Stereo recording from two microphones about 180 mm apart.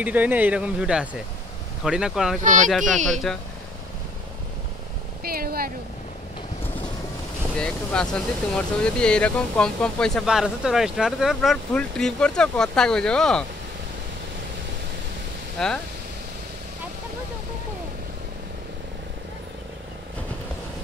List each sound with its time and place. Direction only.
0.0 s speech: 10° right (ahead or behind)
2.4 s speech: 45° right (ahead or behind)
5.2 s speech: 55° right (ahead or behind)
7.5 s speech: 5° left (ahead or behind)
15.6 s speech: 5° left (ahead or behind)